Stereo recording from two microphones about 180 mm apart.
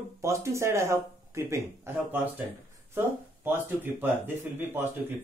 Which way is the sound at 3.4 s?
10° right (ahead or behind).